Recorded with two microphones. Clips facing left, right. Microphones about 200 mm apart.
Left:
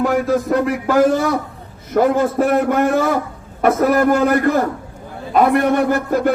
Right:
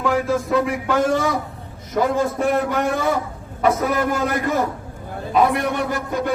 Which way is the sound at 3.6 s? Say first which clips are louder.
Left 5 dB; 60° left (ahead or behind).